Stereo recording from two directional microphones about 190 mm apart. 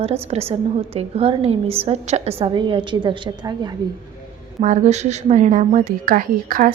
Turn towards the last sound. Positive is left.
turn(degrees=-45)  # may be behind; listen again after turning